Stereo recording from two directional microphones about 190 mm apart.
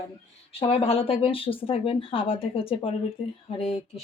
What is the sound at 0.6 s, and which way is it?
Speech, 30° left (ahead or behind).